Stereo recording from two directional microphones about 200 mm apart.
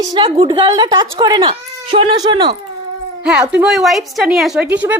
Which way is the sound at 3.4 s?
10° right (ahead or behind).